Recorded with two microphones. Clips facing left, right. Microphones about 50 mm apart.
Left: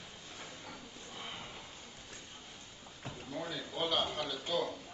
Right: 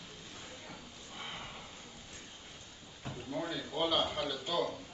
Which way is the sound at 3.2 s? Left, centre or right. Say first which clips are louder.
Right 3 dB; centre.